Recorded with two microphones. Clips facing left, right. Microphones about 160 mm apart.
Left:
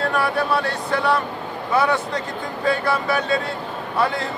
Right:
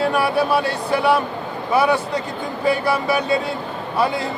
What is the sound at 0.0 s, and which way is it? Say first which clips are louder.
Speech: right 3 dB; 5° right (ahead or behind).